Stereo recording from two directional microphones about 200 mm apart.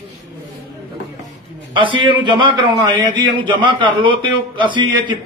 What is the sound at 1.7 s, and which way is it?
A man's voice, 25° right (ahead or behind).